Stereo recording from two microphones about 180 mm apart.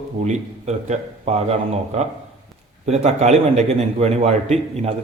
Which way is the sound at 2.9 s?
35° right (ahead or behind).